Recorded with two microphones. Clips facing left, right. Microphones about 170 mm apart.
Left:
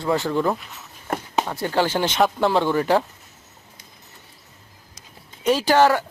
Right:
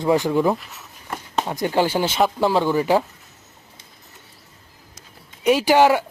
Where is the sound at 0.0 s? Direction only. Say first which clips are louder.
Right 3 dB; 15° right (ahead or behind).